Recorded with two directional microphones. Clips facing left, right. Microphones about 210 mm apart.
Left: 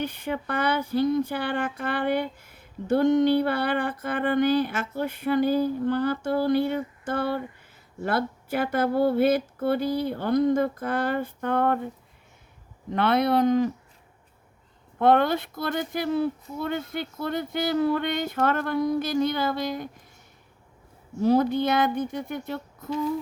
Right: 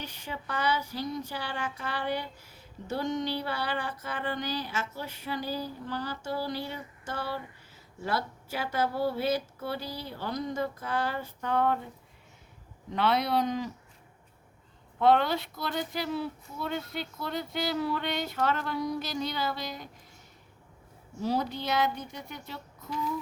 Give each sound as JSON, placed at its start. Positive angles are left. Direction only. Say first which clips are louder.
{"t": 0.0, "sound": "speech", "louder": "left 10 dB", "side_deg": 55}
{"t": 12.9, "sound": "speech", "louder": "left 5 dB", "side_deg": 55}
{"t": 14.9, "sound": "speech", "louder": "left 4 dB", "side_deg": 50}
{"t": 21.2, "sound": "speech", "louder": "left 10 dB", "side_deg": 55}